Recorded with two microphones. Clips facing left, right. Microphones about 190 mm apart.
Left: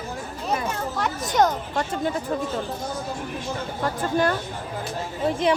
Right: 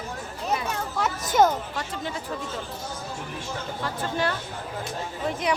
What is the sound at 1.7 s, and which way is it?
Speech, 45° left (ahead or behind).